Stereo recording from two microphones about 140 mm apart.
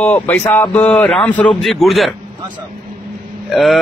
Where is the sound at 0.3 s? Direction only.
15° left (ahead or behind).